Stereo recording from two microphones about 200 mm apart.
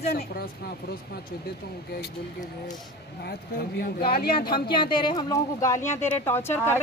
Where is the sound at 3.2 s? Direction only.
50° left (ahead or behind).